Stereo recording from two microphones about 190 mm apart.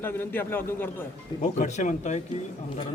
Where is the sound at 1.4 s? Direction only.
40° left (ahead or behind).